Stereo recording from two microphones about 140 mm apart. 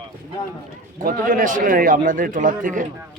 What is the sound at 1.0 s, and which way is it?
A man's voice, 85° right.